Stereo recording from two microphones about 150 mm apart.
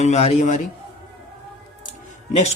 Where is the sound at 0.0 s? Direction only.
45° left (ahead or behind).